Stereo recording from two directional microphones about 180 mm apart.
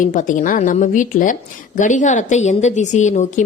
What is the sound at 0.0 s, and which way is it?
A woman's voice, 45° left (ahead or behind).